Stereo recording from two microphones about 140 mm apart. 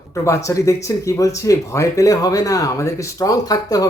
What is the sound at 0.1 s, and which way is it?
Speech, 20° left (ahead or behind).